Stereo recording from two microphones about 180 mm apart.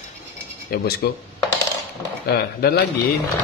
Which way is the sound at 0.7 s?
55° left (ahead or behind).